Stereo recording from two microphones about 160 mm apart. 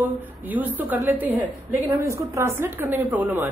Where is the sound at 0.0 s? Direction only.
10° right (ahead or behind).